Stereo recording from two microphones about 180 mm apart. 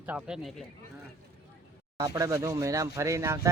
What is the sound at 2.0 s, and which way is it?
Speech, 20° right (ahead or behind).